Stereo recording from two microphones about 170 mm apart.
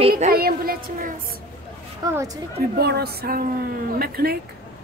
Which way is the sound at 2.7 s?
70° right (ahead or behind).